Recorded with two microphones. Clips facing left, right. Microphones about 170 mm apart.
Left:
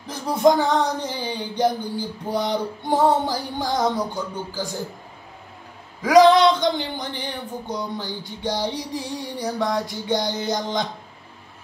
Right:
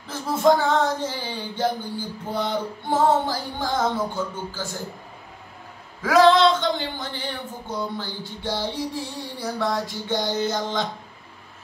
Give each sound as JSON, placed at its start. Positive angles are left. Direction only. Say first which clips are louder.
{"t": 0.0, "sound": "speech", "louder": "left 2 dB", "side_deg": 15}
{"t": 6.0, "sound": "speech", "louder": "left 3 dB", "side_deg": 15}